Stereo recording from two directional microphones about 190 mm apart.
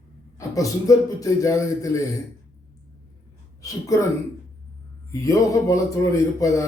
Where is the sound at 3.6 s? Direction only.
15° left (ahead or behind).